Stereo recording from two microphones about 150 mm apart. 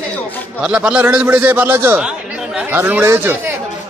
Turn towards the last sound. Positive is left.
turn(degrees=-15)  # may be behind; listen again after turning